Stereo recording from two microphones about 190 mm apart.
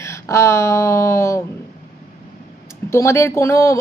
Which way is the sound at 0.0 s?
15° left (ahead or behind).